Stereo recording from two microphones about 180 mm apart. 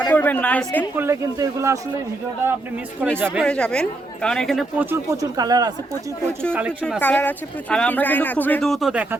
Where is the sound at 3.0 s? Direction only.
5° right (ahead or behind).